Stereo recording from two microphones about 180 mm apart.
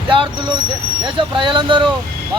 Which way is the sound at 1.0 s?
25° right (ahead or behind).